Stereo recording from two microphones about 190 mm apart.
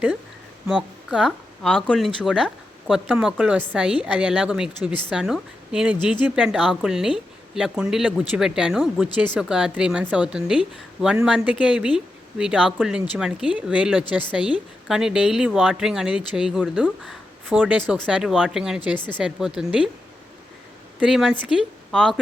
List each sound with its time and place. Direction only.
0.7 s speech: 5° right (ahead or behind)
18.9 s speech: 25° left (ahead or behind)
19.2 s speech: 5° right (ahead or behind)
21.0 s speech: 5° right (ahead or behind)